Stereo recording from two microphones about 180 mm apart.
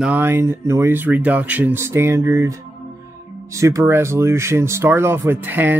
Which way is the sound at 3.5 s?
15° right (ahead or behind).